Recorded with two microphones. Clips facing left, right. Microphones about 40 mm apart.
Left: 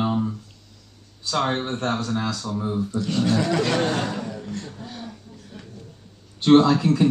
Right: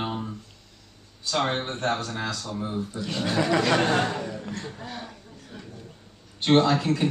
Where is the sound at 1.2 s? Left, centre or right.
Centre.